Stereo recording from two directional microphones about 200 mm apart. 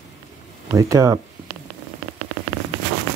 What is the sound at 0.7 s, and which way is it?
Speech, 15° right (ahead or behind).